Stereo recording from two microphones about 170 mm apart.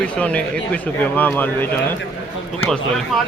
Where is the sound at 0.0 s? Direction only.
5° left (ahead or behind).